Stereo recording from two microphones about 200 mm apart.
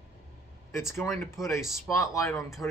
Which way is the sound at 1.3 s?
Centre (ahead or behind).